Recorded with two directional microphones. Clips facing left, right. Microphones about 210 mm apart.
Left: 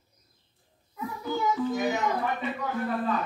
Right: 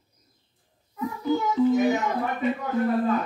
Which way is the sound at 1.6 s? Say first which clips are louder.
Right 8 dB; 25° right (ahead or behind).